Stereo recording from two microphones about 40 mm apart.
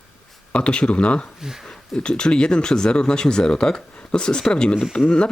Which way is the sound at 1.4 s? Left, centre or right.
Centre.